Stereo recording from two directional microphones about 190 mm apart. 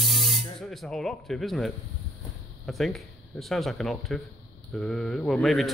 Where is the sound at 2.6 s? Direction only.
Centre (ahead or behind).